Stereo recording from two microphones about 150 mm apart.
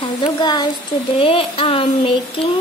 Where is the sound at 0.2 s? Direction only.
30° left (ahead or behind).